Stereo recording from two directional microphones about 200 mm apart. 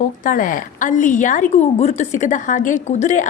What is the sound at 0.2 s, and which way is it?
A woman's voice, 40° left (ahead or behind).